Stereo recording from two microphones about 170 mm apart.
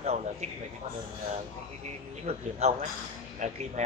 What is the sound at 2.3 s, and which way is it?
A man's voice, 40° right (ahead or behind).